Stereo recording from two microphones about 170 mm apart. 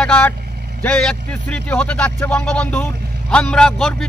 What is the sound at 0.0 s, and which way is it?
A man's voice, 5° left (ahead or behind).